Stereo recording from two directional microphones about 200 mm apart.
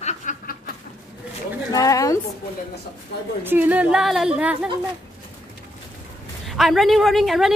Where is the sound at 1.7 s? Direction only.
15° left (ahead or behind).